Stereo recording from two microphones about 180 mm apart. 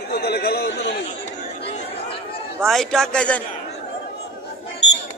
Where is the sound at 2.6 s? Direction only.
Centre (ahead or behind).